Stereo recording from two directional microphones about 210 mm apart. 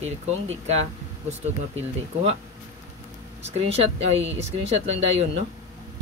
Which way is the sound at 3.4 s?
30° right (ahead or behind).